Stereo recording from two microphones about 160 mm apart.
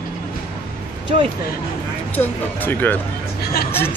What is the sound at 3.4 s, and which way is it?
Vehicle, 75° left (ahead or behind).